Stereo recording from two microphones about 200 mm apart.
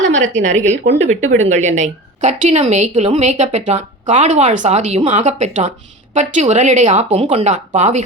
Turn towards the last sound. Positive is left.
turn(degrees=-35)  # may be behind; listen again after turning